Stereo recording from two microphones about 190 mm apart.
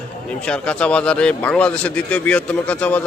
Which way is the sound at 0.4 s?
5° left (ahead or behind).